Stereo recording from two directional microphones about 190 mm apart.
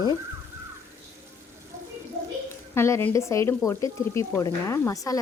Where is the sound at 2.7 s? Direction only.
15° left (ahead or behind).